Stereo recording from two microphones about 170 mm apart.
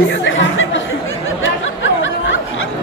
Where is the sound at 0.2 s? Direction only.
90° left.